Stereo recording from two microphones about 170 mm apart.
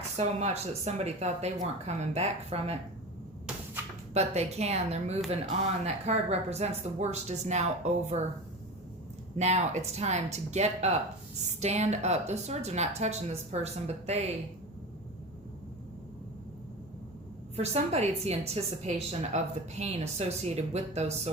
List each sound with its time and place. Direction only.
0.2 s a woman's voice: 40° right (ahead or behind)
4.1 s a woman's voice: 40° right (ahead or behind)
9.4 s a woman's voice: 40° right (ahead or behind)
17.6 s a woman's voice: 40° right (ahead or behind)